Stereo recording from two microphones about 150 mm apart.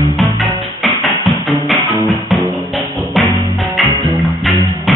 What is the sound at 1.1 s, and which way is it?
Music, centre (ahead or behind).